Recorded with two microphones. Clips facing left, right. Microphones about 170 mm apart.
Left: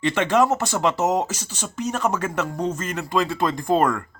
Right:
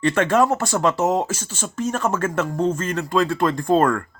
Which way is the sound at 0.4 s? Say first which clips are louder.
Right 1 dB; 5° left (ahead or behind).